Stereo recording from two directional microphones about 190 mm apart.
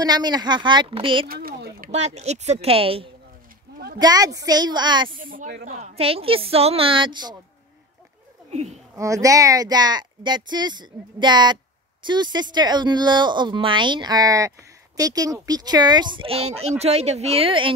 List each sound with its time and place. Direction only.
0.0 s speech: 20° right (ahead or behind)
1.2 s a sound: 50° right (ahead or behind)
1.9 s speech: 35° right (ahead or behind)
3.7 s a sound: 50° right (ahead or behind)
4.0 s speech: 20° right (ahead or behind)
5.1 s speech: 45° right (ahead or behind)
5.8 s speech: 30° right (ahead or behind)
8.5 s a sound: 35° right (ahead or behind)
8.9 s speech: 15° right (ahead or behind)